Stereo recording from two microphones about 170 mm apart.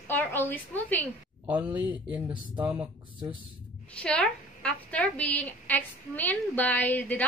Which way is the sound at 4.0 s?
5° left (ahead or behind).